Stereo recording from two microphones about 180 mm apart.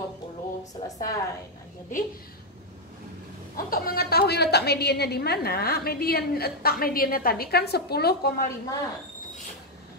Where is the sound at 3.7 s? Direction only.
55° left (ahead or behind).